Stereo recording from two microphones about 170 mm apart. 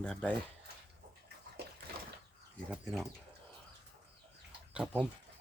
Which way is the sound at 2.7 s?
Centre (ahead or behind).